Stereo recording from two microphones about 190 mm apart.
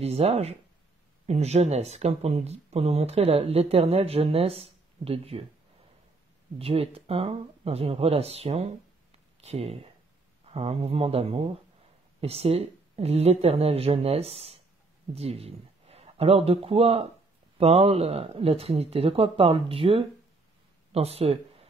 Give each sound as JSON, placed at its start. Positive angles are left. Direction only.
{"t": 0.0, "sound": "speech", "side_deg": -35}
{"t": 6.6, "sound": "speech", "side_deg": -30}